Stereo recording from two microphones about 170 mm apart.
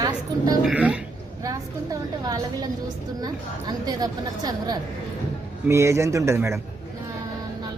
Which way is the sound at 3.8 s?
20° right (ahead or behind).